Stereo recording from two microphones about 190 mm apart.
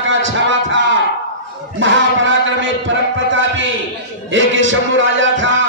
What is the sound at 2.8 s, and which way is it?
Music, 80° right.